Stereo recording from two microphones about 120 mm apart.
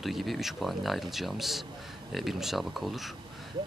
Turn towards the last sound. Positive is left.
turn(degrees=0)  # may be behind; listen again after turning